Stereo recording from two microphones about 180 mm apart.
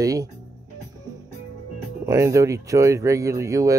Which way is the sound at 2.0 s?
15° right (ahead or behind).